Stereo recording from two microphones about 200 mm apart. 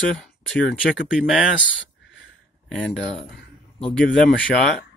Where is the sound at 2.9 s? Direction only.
65° left (ahead or behind).